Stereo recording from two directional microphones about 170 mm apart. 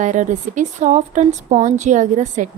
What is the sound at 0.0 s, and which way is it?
A woman's voice, 45° right (ahead or behind).